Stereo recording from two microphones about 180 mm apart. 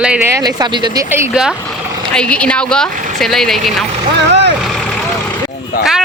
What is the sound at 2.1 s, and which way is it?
Speech, 5° left (ahead or behind).